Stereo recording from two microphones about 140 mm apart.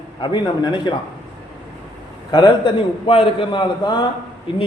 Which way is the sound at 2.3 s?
35° left (ahead or behind).